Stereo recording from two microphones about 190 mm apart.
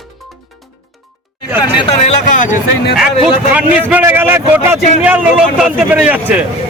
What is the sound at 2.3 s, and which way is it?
Speech, 45° left (ahead or behind).